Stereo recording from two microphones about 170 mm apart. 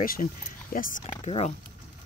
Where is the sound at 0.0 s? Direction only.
55° left (ahead or behind); by 1.5 s 40° left (ahead or behind).